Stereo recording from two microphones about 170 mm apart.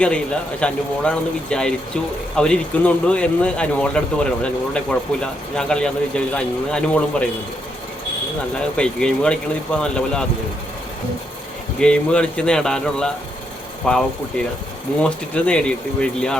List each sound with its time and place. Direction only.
0.0 s speech: 5° left (ahead or behind)
8.8 s speech: 5° left (ahead or behind)
11.8 s speech: 5° left (ahead or behind)